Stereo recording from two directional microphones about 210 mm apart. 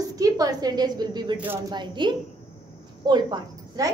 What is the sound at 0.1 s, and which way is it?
A woman's voice, 15° right (ahead or behind).